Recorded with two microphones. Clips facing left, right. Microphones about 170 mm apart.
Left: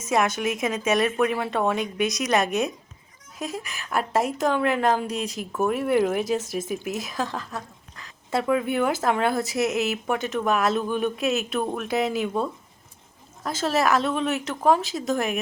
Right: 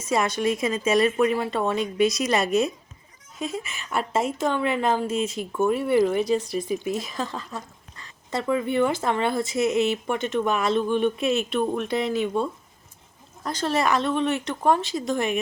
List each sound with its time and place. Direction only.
0.1 s speech: centre (ahead or behind)